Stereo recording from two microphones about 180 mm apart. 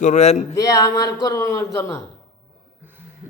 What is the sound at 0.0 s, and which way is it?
Speech, 40° left (ahead or behind).